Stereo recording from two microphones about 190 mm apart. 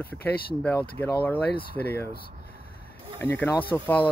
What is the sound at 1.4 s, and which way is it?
Speech, 55° left (ahead or behind).